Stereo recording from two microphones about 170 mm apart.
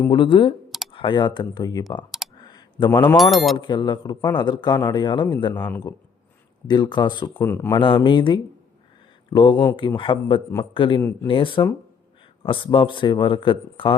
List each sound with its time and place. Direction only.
0.1 s a man's voice: 30° left (ahead or behind)
2.4 s computer keyboard: 25° left (ahead or behind)
3.2 s speech: centre (ahead or behind)
3.6 s a man's voice: 25° left (ahead or behind)
6.7 s a man's voice: 25° left (ahead or behind)
7.3 s speech: 15° left (ahead or behind)
7.8 s a man's voice: 30° left (ahead or behind)